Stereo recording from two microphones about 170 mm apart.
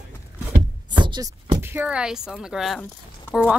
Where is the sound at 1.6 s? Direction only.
10° right (ahead or behind).